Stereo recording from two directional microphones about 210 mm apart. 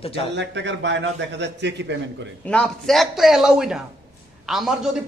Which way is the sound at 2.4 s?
5° left (ahead or behind).